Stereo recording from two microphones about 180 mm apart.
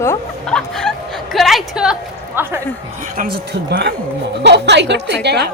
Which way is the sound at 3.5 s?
65° right (ahead or behind).